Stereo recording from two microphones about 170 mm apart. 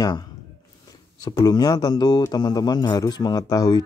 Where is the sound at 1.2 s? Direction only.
25° left (ahead or behind).